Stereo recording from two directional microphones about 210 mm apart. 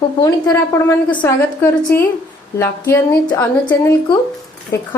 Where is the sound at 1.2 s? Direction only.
10° left (ahead or behind).